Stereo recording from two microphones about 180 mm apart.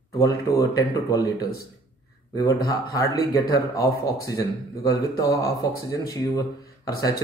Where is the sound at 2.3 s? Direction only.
20° left (ahead or behind).